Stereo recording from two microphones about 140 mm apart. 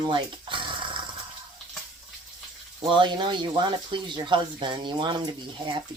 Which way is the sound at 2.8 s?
35° right (ahead or behind).